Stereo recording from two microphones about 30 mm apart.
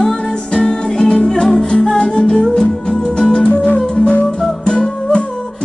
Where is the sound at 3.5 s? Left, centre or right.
Left.